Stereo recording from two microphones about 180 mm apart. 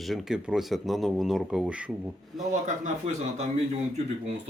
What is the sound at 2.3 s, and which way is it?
Speech, 45° right (ahead or behind).